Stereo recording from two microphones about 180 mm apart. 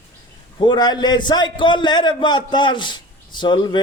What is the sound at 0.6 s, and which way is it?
Speech, 25° left (ahead or behind).